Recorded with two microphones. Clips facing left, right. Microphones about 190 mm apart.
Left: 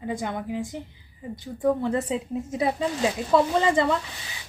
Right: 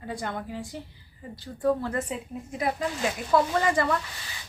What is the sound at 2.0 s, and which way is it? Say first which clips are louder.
A woman's voice: left 7 dB; 30° left (ahead or behind).